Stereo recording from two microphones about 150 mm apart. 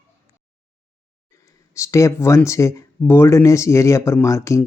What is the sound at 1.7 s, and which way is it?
Speech, 20° left (ahead or behind).